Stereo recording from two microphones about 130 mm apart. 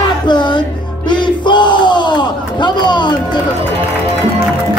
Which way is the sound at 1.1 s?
35° left (ahead or behind).